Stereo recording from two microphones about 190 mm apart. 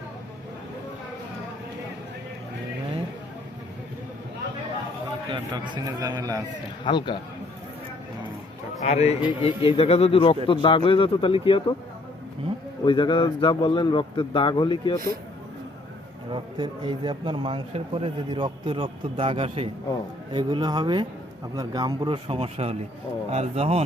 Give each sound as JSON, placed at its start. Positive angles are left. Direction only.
{"t": 5.3, "sound": "speech", "side_deg": -25}
{"t": 6.8, "sound": "a man's voice", "side_deg": 25}
{"t": 8.8, "sound": "a man's voice", "side_deg": 35}
{"t": 12.8, "sound": "a man's voice", "side_deg": 25}
{"t": 16.3, "sound": "speech", "side_deg": -25}